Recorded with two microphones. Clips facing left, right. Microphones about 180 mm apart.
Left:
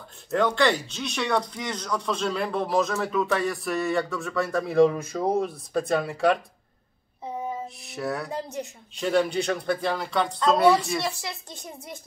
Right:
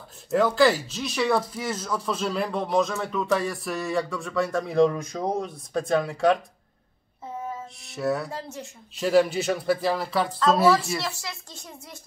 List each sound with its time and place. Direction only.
0.3 s speech: 5° right (ahead or behind)
7.6 s music: centre (ahead or behind)
8.3 s speech: 15° left (ahead or behind)
8.9 s speech: centre (ahead or behind)
11.0 s speech: 15° left (ahead or behind)